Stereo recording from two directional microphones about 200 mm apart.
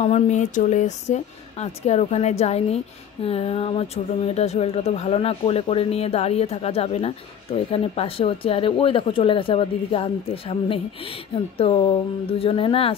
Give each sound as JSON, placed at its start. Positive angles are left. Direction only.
{"t": 0.0, "sound": "speech", "side_deg": 35}